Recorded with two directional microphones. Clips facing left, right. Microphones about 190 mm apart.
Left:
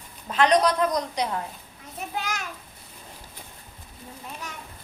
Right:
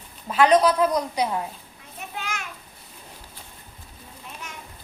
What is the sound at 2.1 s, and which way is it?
Children playing, 35° left (ahead or behind).